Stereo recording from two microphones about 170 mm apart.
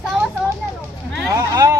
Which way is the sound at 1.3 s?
20° right (ahead or behind).